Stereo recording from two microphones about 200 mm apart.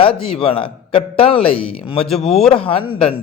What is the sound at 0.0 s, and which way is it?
A man's voice, 25° left (ahead or behind).